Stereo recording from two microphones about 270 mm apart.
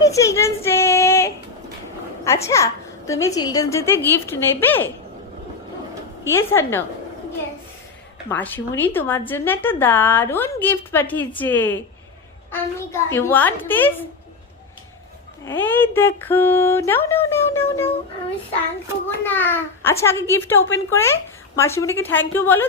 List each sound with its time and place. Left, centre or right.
0.0 s child singing: centre
2.2 s a woman's voice: centre
6.2 s a woman's voice: centre
8.3 s a woman's voice: centre
15.4 s a woman's voice: centre
19.2 s a woman's voice: centre